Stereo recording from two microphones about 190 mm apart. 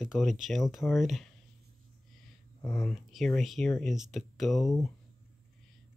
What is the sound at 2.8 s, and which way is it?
Speech, centre (ahead or behind).